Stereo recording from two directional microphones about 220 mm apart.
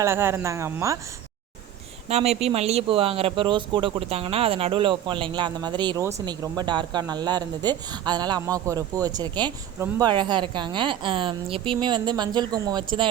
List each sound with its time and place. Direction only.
0.0 s speech: 10° right (ahead or behind)
2.0 s speech: 30° right (ahead or behind)